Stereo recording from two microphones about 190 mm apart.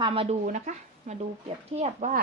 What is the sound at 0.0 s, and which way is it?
Speech, 30° right (ahead or behind).